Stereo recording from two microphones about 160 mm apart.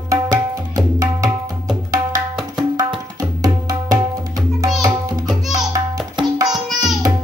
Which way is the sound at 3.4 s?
25° right (ahead or behind).